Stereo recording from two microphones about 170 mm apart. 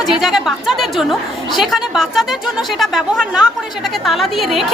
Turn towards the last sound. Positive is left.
turn(degrees=0)  # may be behind; listen again after turning